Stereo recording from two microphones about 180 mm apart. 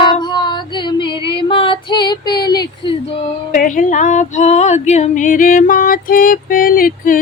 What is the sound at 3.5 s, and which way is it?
Female singing, 45° left (ahead or behind).